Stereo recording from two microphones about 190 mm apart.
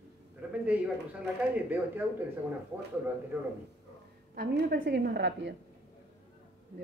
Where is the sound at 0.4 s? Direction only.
5° right (ahead or behind).